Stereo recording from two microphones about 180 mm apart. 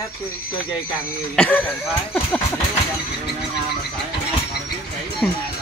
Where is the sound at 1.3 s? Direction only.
5° left (ahead or behind).